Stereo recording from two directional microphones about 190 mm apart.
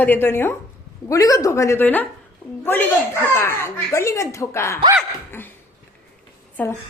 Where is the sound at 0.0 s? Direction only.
10° left (ahead or behind).